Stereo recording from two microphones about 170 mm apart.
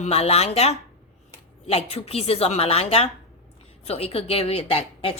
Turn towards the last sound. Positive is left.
turn(degrees=30)  # may be behind; listen again after turning